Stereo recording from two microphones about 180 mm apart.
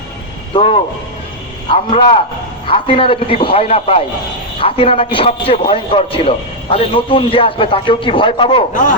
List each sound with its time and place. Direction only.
0.5 s a man's voice: 30° left (ahead or behind)